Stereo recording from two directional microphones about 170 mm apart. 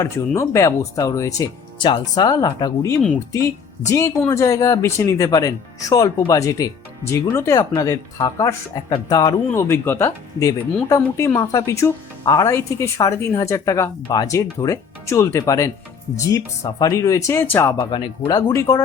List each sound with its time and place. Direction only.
0.0 s speech: 20° left (ahead or behind)
17.7 s speech: 25° left (ahead or behind)